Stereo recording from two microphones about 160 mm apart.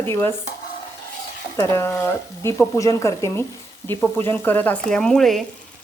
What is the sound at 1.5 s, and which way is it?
A woman's voice, 20° left (ahead or behind).